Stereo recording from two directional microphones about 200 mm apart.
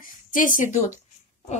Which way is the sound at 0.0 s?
40° left (ahead or behind).